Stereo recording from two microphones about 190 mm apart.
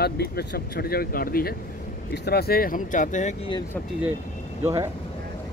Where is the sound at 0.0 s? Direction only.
55° left (ahead or behind); by 3.3 s 40° left (ahead or behind).